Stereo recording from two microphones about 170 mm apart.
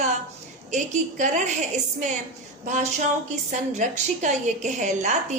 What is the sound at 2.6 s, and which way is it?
Speech, 45° right (ahead or behind).